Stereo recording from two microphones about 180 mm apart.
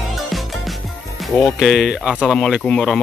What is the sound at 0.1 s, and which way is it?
Music, centre (ahead or behind).